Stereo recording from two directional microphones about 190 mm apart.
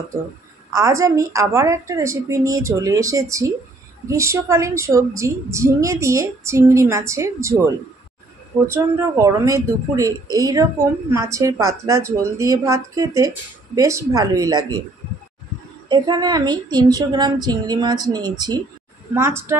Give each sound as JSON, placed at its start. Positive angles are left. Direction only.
{"t": 0.7, "sound": "a woman's voice", "side_deg": -15}
{"t": 15.9, "sound": "a woman's voice", "side_deg": -20}